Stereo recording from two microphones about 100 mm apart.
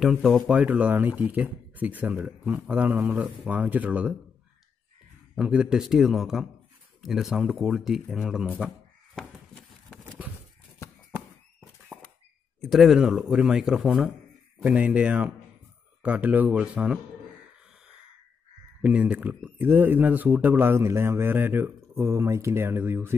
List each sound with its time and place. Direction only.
0.0 s speech: 5° right (ahead or behind)
5.3 s speech: 10° right (ahead or behind)
8.5 s crow: 5° right (ahead or behind)
12.6 s speech: centre (ahead or behind)
18.8 s speech: 10° right (ahead or behind)